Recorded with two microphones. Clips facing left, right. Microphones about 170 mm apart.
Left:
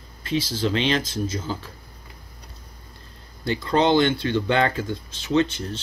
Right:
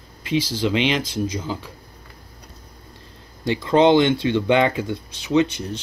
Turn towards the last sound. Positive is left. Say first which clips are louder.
# right 2 dB
turn(degrees=-15)  # may be behind; listen again after turning